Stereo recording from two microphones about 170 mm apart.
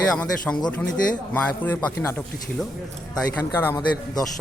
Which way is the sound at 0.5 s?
5° left (ahead or behind).